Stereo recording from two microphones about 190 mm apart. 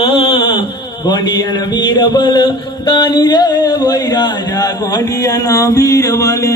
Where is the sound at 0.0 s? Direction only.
25° left (ahead or behind).